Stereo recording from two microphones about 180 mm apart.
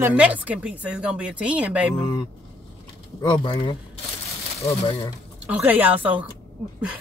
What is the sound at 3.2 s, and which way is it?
Speech, 25° left (ahead or behind).